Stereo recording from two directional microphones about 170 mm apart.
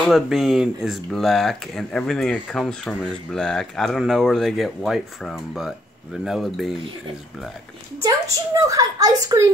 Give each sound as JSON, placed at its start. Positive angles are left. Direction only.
{"t": 0.1, "sound": "speech", "side_deg": 0}
{"t": 8.0, "sound": "a woman's voice", "side_deg": -20}